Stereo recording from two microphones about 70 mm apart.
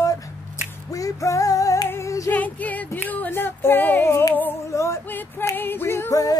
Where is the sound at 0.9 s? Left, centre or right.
Left.